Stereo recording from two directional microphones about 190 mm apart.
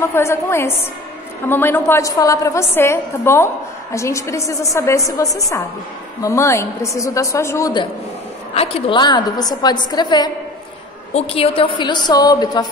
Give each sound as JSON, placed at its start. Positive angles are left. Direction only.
{"t": 0.0, "sound": "a woman's voice", "side_deg": 15}